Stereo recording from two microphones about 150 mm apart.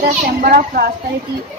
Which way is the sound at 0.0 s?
70° right (ahead or behind).